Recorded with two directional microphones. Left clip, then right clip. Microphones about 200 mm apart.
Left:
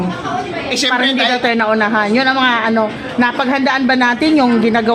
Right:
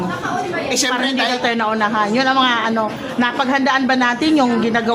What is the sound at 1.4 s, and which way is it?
A woman's voice, 25° left (ahead or behind).